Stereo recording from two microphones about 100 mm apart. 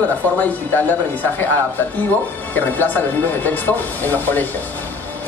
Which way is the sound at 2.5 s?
15° left (ahead or behind).